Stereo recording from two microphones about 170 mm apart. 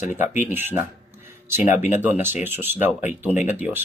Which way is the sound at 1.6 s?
45° left (ahead or behind).